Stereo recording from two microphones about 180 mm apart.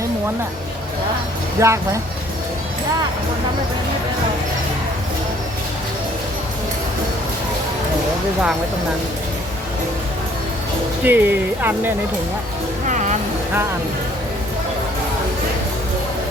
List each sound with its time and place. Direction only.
1.5 s speech: 15° right (ahead or behind)
11.0 s speech: 10° right (ahead or behind)